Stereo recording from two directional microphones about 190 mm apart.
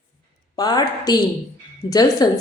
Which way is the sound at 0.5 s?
20° left (ahead or behind).